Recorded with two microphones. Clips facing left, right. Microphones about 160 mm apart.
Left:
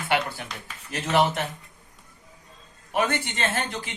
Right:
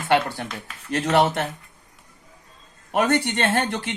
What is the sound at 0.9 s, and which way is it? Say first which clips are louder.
Speech: right 3 dB; 60° right (ahead or behind).